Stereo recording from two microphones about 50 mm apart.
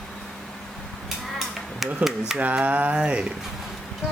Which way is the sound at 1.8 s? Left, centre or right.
Centre.